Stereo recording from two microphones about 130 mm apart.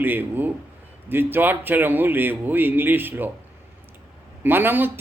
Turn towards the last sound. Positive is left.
turn(degrees=-15)  # may be behind; listen again after turning